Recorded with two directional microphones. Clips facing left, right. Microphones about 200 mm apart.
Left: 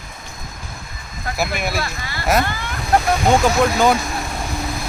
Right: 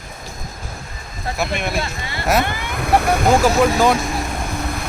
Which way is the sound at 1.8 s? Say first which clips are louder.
Right 1 dB; 25° right (ahead or behind).